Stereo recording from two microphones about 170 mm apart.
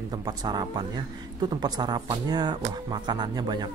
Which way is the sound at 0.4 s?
25° right (ahead or behind).